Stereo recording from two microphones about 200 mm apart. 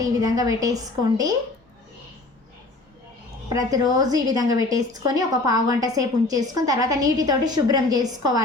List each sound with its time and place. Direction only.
0.0 s a woman's voice: 20° right (ahead or behind)
3.5 s a woman's voice: 20° right (ahead or behind)